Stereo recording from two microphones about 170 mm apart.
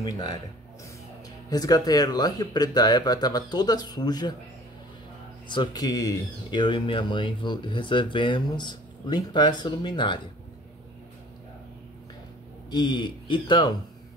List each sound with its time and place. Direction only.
0.0 s speech: 25° left (ahead or behind)
1.5 s speech: 20° left (ahead or behind)
5.5 s speech: 25° left (ahead or behind)
12.7 s speech: 25° left (ahead or behind)